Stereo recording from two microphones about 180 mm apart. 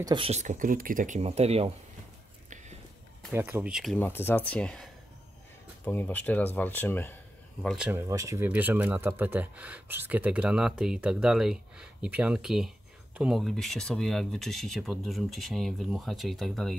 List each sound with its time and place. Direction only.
0.0 s speech: 25° right (ahead or behind)
0.3 s speech: 45° right (ahead or behind)
3.3 s speech: 10° right (ahead or behind)
4.0 s speech: 10° left (ahead or behind)
5.9 s speech: 10° left (ahead or behind)
7.6 s speech: 5° right (ahead or behind)